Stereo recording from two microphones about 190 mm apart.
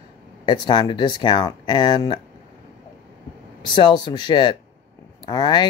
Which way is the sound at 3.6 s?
25° left (ahead or behind).